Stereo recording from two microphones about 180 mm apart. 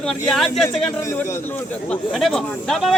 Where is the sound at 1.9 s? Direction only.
5° left (ahead or behind).